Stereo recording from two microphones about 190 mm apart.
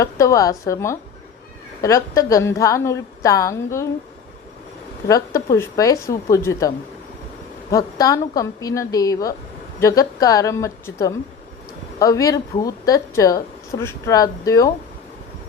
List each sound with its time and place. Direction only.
0.0 s a woman's voice: 15° left (ahead or behind)
5.0 s a woman's voice: 15° left (ahead or behind)